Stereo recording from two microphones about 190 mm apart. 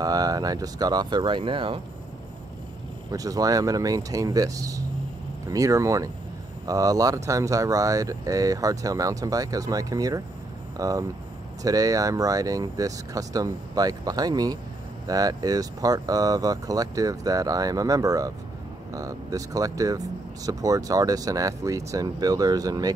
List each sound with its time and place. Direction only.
0.0 s speech: 20° right (ahead or behind)
3.1 s speech: 20° right (ahead or behind)